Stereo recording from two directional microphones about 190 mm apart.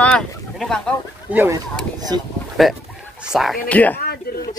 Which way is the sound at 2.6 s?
Centre (ahead or behind).